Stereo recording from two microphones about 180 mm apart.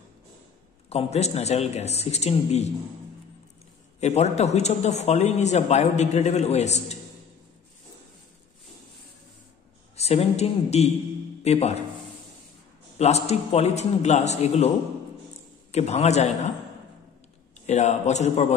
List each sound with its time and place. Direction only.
0.8 s a man's voice: 35° left (ahead or behind)
4.0 s a man's voice: 35° left (ahead or behind)
9.9 s a man's voice: 35° left (ahead or behind)
13.0 s a man's voice: 35° left (ahead or behind)
15.7 s a man's voice: 35° left (ahead or behind)
17.6 s a man's voice: 40° left (ahead or behind)